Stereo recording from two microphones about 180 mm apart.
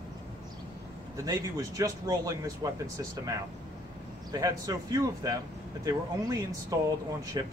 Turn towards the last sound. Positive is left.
turn(degrees=-20)  # may be behind; listen again after turning